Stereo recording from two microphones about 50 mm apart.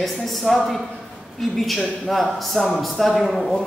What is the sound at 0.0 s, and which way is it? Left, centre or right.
Speech, centre.